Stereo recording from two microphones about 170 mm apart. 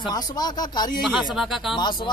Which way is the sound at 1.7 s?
25° left (ahead or behind).